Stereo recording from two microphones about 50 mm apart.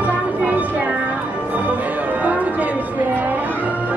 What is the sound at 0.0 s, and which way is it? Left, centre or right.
Music, right.